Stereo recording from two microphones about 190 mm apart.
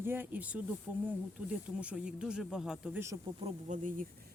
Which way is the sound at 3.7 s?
45° right (ahead or behind).